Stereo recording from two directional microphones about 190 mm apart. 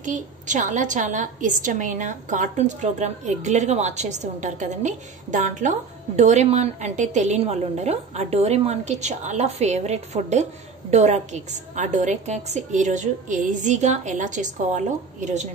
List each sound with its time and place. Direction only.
0.0 s a woman's voice: 40° right (ahead or behind)